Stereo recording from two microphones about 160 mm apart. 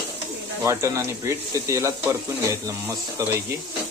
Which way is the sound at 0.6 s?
15° right (ahead or behind).